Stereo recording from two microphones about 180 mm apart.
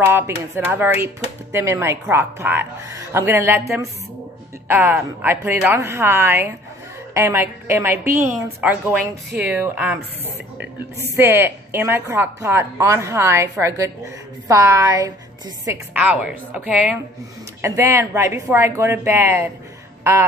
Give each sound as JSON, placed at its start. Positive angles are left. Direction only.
{"t": 0.7, "sound": "a woman's voice", "side_deg": -10}
{"t": 11.1, "sound": "a woman's voice", "side_deg": -15}